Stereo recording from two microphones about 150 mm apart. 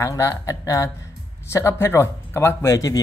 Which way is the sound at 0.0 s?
20° left (ahead or behind).